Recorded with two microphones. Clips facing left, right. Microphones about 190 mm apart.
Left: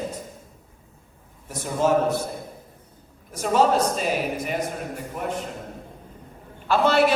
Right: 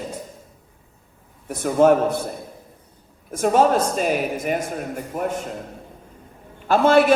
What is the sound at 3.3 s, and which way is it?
Speech, 50° right (ahead or behind).